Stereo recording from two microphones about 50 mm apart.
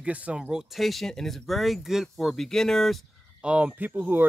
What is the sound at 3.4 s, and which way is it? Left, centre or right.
Speech, right.